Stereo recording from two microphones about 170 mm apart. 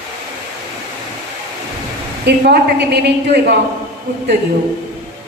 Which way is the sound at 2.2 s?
80° right.